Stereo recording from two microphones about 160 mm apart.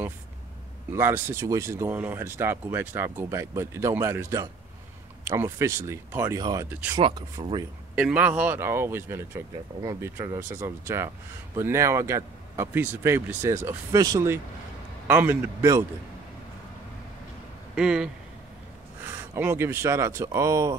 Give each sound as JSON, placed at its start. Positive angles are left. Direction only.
{"t": 0.9, "sound": "speech", "side_deg": -15}
{"t": 6.7, "sound": "speech", "side_deg": -10}
{"t": 7.0, "sound": "speech", "side_deg": -35}
{"t": 7.9, "sound": "speech", "side_deg": -10}
{"t": 17.7, "sound": "speech", "side_deg": -5}